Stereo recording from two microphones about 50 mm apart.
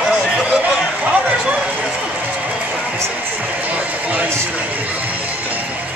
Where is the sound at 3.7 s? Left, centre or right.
Right.